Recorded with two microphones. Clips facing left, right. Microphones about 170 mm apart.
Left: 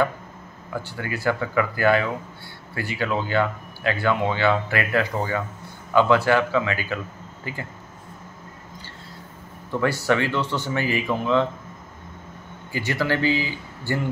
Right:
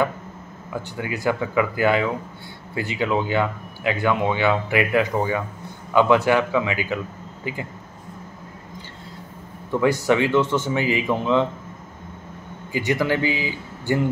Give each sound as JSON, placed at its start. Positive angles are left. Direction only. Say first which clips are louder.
{"t": 0.8, "sound": "speech", "louder": "right 1 dB", "side_deg": -15}
{"t": 9.7, "sound": "speech", "louder": "right 3 dB", "side_deg": -15}
{"t": 12.7, "sound": "speech", "louder": "right 3 dB", "side_deg": -15}